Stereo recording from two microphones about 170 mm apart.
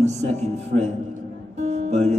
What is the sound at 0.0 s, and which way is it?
Mantra, 40° right (ahead or behind).